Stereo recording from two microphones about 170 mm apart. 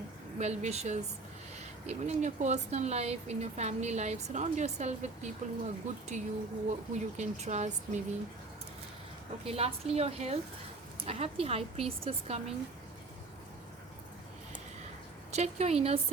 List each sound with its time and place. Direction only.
0.3 s speech: 40° right (ahead or behind)
9.5 s speech: 35° right (ahead or behind)
15.3 s speech: 40° right (ahead or behind)